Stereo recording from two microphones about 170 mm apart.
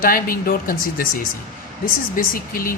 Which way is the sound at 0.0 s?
55° left (ahead or behind).